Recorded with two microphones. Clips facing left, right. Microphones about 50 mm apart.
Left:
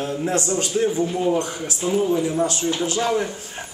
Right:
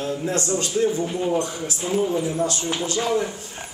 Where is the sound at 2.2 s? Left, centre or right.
Left.